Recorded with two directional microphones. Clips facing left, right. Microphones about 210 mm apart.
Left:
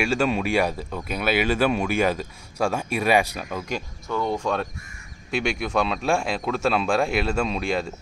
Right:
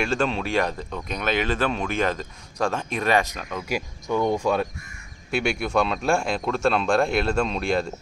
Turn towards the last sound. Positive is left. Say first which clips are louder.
# right 1 dB
turn(degrees=5)  # may be behind; listen again after turning